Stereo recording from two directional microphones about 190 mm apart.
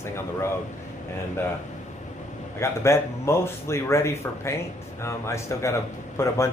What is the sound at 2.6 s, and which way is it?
A man's voice, 15° left (ahead or behind).